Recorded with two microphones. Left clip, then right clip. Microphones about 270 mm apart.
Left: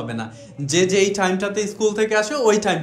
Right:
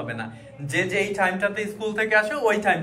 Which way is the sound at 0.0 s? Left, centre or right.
Centre.